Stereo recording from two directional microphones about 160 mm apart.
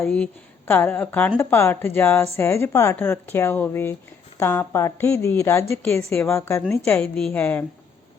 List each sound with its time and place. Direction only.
0.0 s speech: 5° left (ahead or behind)
7.0 s speech: 5° left (ahead or behind)